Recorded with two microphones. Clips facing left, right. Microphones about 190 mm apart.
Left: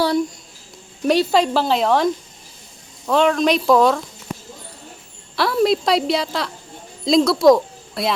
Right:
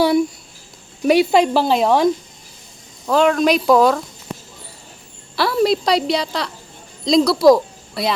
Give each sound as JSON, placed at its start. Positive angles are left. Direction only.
{"t": 0.0, "sound": "a sound", "side_deg": -10}
{"t": 1.0, "sound": "speech", "side_deg": -10}
{"t": 3.1, "sound": "a woman's voice", "side_deg": 0}
{"t": 5.4, "sound": "a woman's voice", "side_deg": 0}